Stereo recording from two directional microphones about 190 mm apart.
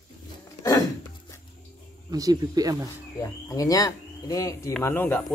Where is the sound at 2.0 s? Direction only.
20° right (ahead or behind).